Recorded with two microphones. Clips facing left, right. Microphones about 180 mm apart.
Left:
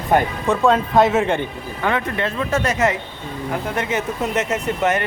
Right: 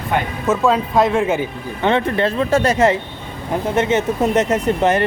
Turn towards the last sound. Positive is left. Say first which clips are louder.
# right 4 dB
turn(degrees=-35)  # may be behind; listen again after turning